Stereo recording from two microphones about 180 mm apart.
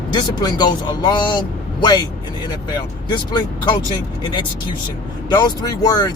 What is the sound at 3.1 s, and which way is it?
Speech, 25° left (ahead or behind).